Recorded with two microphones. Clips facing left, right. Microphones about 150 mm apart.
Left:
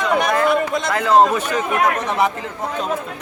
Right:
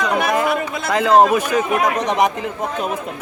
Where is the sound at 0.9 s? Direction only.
15° right (ahead or behind).